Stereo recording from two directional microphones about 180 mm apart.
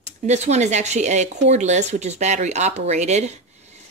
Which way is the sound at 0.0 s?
40° right (ahead or behind).